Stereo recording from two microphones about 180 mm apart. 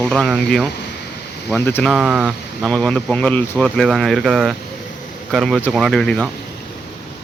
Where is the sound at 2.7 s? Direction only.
5° left (ahead or behind).